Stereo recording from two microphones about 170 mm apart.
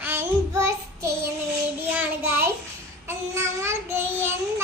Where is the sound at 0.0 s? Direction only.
15° right (ahead or behind).